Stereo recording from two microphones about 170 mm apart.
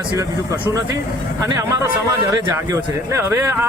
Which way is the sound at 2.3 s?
20° right (ahead or behind).